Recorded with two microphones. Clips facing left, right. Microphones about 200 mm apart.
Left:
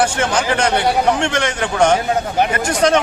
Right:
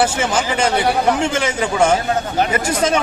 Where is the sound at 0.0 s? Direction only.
5° right (ahead or behind).